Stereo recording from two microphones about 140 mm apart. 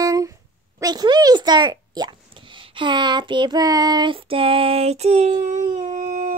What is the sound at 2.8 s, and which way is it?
Child singing, 35° right (ahead or behind).